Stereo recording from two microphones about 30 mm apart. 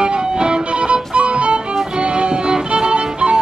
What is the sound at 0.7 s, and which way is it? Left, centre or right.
Music, right.